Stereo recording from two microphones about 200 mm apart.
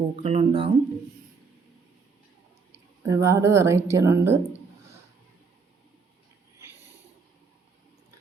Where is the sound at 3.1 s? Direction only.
15° right (ahead or behind).